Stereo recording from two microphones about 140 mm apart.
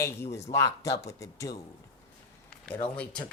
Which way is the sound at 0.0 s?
20° left (ahead or behind).